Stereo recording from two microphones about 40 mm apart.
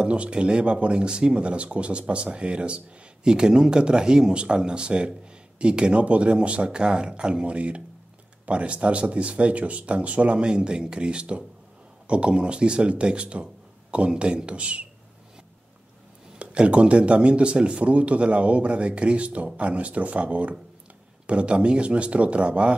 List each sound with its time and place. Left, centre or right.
0.0 s speech: right
16.3 s speech: right